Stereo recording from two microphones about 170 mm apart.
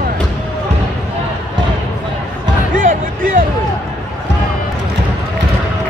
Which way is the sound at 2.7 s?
55° right (ahead or behind).